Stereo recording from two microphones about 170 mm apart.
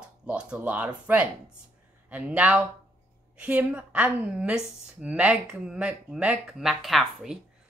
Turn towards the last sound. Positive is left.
turn(degrees=0)  # may be behind; listen again after turning